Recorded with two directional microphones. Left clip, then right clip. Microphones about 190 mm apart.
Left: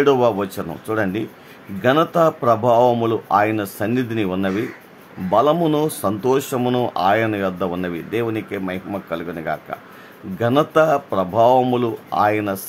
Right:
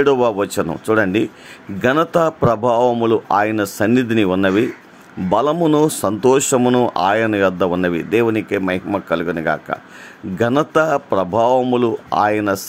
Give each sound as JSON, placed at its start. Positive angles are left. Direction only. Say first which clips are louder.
{"t": 0.0, "sound": "speech", "louder": "right 1 dB", "side_deg": -30}